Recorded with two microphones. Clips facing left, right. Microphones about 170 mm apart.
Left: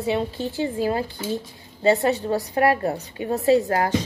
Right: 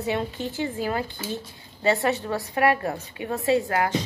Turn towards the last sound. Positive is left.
turn(degrees=40)  # may be behind; listen again after turning